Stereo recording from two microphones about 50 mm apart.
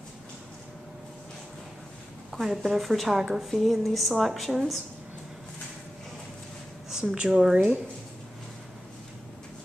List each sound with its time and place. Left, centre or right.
2.3 s a woman's voice: centre
6.9 s a sound: centre
7.2 s speech: centre
7.5 s speech: right